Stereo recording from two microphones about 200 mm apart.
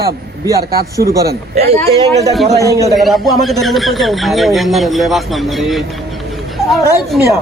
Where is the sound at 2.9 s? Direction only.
Centre (ahead or behind).